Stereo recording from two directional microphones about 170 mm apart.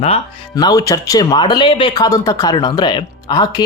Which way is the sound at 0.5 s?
20° left (ahead or behind).